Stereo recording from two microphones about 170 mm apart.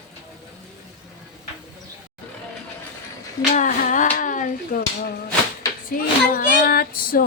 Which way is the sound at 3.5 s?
50° left (ahead or behind).